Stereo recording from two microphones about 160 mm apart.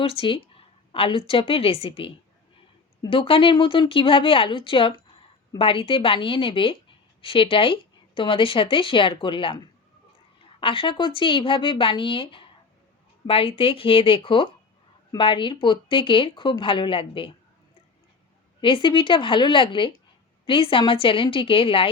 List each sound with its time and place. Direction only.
0.0 s a woman's voice: 35° left (ahead or behind)
10.6 s a woman's voice: 35° left (ahead or behind)
18.6 s a woman's voice: 30° left (ahead or behind)